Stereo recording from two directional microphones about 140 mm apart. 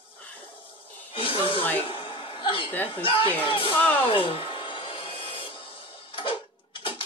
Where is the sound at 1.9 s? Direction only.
40° left (ahead or behind).